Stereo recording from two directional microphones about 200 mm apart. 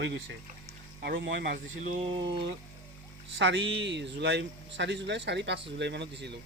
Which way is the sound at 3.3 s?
65° right (ahead or behind).